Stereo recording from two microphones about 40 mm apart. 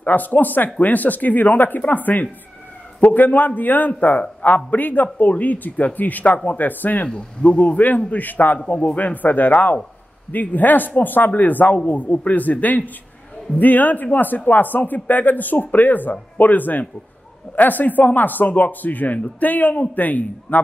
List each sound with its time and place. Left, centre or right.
0.0 s speech: left
7.1 s a man's voice: left